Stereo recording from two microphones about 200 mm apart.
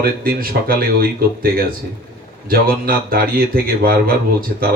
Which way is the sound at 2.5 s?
45° right (ahead or behind).